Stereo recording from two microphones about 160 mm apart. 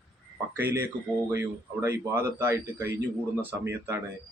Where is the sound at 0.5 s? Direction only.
15° right (ahead or behind).